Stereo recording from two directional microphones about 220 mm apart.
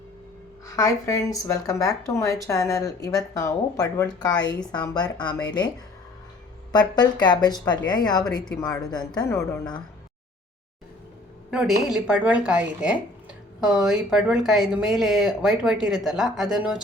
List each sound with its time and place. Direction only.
0.7 s speech: 15° left (ahead or behind)
6.7 s speech: 20° left (ahead or behind)
11.5 s speech: 5° right (ahead or behind)